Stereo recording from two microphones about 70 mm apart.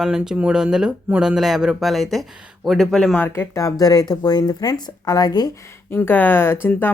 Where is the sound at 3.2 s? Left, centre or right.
Left.